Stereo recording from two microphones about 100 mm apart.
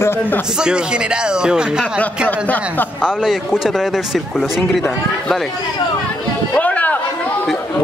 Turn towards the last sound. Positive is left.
turn(degrees=15)  # may be behind; listen again after turning